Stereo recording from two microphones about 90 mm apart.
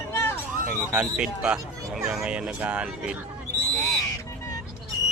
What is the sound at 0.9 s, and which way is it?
Speech, 10° right (ahead or behind).